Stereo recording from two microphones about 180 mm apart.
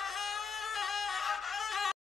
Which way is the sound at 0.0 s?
Centre (ahead or behind).